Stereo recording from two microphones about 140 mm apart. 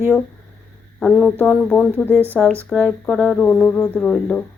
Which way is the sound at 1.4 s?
10° left (ahead or behind).